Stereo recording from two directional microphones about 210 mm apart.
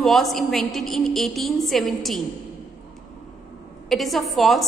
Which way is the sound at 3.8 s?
Centre (ahead or behind).